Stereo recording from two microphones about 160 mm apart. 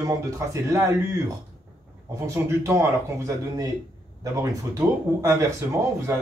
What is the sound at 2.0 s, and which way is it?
Speech, 20° right (ahead or behind).